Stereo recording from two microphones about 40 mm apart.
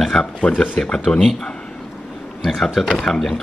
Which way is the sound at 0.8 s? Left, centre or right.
Centre.